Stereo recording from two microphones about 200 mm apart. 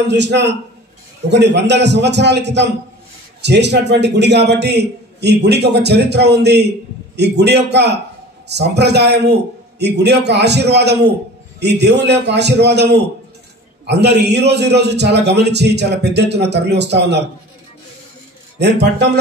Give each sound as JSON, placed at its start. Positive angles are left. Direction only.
{"t": 0.1, "sound": "a man's voice", "side_deg": -60}
{"t": 18.6, "sound": "a man's voice", "side_deg": -60}